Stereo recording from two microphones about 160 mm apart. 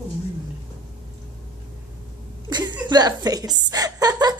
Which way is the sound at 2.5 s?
25° right (ahead or behind).